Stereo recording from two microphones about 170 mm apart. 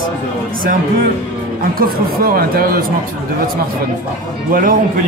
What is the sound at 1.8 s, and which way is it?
Speech, 60° right (ahead or behind).